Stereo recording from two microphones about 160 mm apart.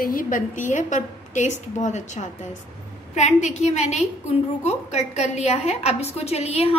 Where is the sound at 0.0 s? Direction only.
60° left (ahead or behind).